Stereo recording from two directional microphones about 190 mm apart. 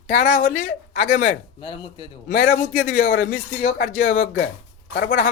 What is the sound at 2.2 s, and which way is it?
Speech, 45° left (ahead or behind).